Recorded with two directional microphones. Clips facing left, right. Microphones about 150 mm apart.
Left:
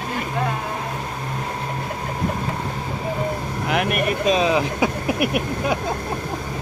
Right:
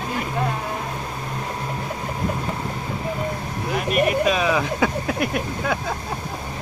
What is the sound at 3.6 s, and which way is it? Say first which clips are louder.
Speech: even; 65° left (ahead or behind).